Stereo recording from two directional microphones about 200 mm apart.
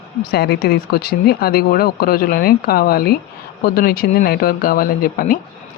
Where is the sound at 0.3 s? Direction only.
55° left (ahead or behind).